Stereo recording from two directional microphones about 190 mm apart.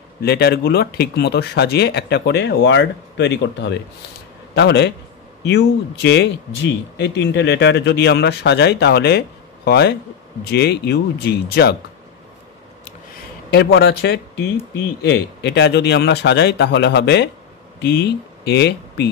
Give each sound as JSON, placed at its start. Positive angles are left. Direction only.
{"t": 0.2, "sound": "a man's voice", "side_deg": 55}
{"t": 13.5, "sound": "a man's voice", "side_deg": 60}